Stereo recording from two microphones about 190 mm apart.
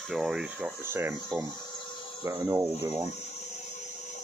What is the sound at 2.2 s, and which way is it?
Speech, 15° right (ahead or behind).